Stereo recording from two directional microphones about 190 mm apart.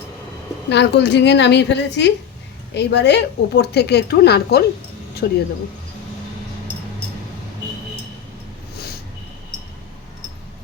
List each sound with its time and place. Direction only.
0.7 s a woman's voice: 65° left (ahead or behind)